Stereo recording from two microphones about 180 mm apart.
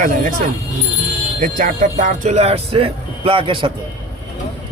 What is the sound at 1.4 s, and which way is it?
Speech, 45° right (ahead or behind).